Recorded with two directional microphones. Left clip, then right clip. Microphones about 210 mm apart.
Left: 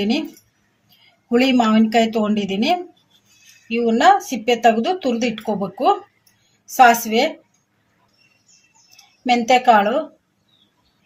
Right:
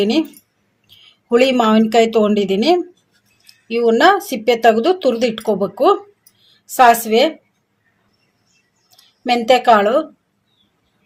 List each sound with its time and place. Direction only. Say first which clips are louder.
1.3 s speech: right 4 dB; 40° right (ahead or behind)
9.2 s speech: right 2 dB; 35° right (ahead or behind)